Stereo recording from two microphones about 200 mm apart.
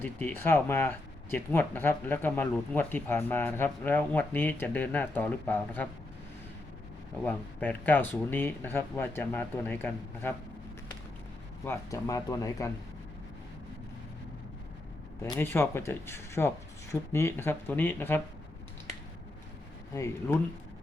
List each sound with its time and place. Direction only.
0.0 s speech: 10° left (ahead or behind)
7.3 s speech: 10° left (ahead or behind)
11.6 s speech: 15° left (ahead or behind)
15.2 s speech: 10° left (ahead or behind)
19.9 s speech: 10° left (ahead or behind)